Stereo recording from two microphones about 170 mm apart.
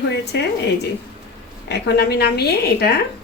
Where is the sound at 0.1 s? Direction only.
75° left (ahead or behind).